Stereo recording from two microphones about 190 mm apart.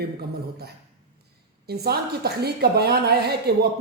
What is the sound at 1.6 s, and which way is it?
A woman's voice, 55° right (ahead or behind).